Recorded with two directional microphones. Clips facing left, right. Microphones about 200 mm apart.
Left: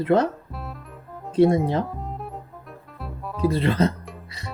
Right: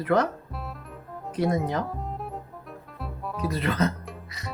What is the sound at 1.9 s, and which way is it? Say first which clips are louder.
Music: even; centre (ahead or behind).